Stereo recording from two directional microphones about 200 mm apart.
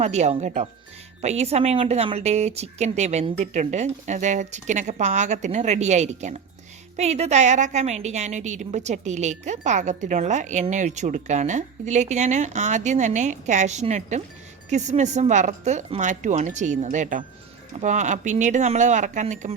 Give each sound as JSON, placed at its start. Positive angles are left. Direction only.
{"t": 0.0, "sound": "a woman's voice", "side_deg": -35}